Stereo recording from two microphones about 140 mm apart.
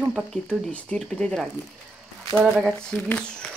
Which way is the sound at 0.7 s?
10° left (ahead or behind).